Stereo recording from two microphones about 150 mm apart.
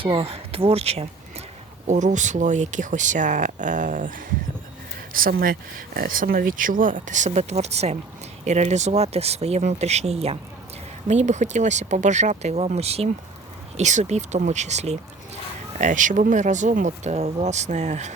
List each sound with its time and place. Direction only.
0.0 s speech: 40° right (ahead or behind)
1.9 s speech: 55° right (ahead or behind)
5.1 s speech: 75° right (ahead or behind); by 18.1 s 50° right (ahead or behind)